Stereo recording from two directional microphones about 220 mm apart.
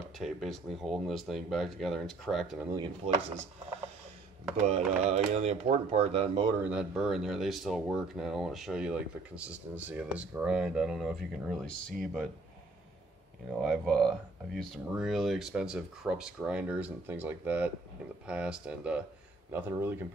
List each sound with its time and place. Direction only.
0.2 s speech: centre (ahead or behind)
2.7 s speech: 20° right (ahead or behind)
4.6 s speech: 30° right (ahead or behind)
6.6 s speech: 5° right (ahead or behind)
13.5 s speech: centre (ahead or behind)